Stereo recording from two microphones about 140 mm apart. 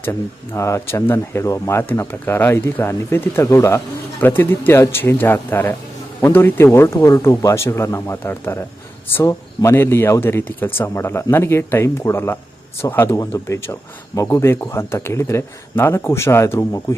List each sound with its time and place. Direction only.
0.0 s speech: 20° left (ahead or behind)